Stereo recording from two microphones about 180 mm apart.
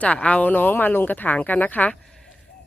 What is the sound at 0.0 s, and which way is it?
Speech, 5° left (ahead or behind).